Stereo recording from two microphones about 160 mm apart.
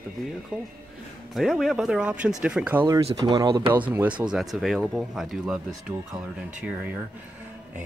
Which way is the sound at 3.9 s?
10° right (ahead or behind).